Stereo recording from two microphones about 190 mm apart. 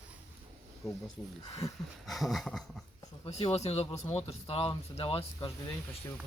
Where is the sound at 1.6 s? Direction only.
15° left (ahead or behind).